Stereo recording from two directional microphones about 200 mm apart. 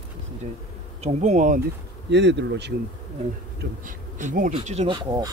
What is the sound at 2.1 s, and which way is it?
Speech, 60° right (ahead or behind).